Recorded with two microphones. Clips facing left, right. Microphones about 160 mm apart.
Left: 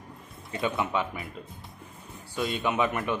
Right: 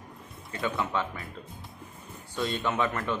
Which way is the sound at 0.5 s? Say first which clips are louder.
Left 2 dB; 20° left (ahead or behind).